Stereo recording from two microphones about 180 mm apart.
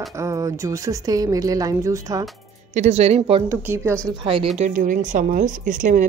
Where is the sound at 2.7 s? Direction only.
40° right (ahead or behind).